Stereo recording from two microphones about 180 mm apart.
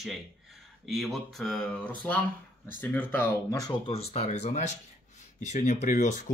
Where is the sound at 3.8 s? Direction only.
35° left (ahead or behind).